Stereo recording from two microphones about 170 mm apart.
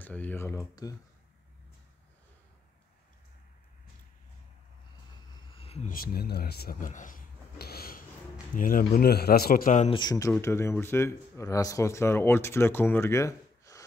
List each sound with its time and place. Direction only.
0.0 s speech: 10° left (ahead or behind)
5.6 s a sound: 35° left (ahead or behind)
5.9 s a man's voice: 60° left (ahead or behind)
9.8 s speech: 25° left (ahead or behind)